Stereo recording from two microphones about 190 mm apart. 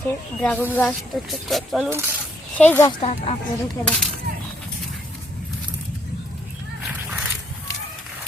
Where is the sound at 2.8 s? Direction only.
35° left (ahead or behind).